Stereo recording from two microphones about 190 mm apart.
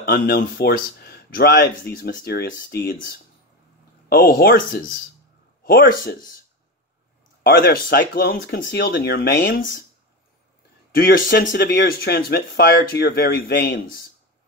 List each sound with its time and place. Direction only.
0.0 s speech: 50° left (ahead or behind)
7.4 s speech: 55° left (ahead or behind)
8.4 s speech: 75° left (ahead or behind); by 9.8 s 50° left (ahead or behind)
10.9 s speech: 50° left (ahead or behind)